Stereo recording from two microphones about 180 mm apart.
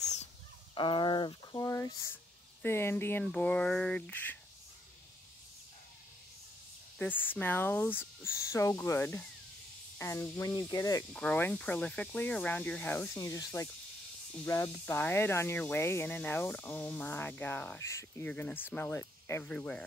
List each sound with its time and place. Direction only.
0.7 s speech: 25° left (ahead or behind); by 4.4 s 10° left (ahead or behind)
7.0 s speech: 10° left (ahead or behind)